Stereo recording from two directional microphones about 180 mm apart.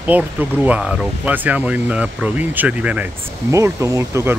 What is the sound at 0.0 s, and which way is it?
Speech, 10° right (ahead or behind).